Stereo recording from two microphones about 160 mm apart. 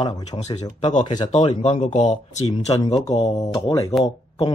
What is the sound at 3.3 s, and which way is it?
Speech, 30° left (ahead or behind).